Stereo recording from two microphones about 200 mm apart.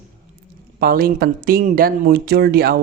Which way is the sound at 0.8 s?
50° right (ahead or behind).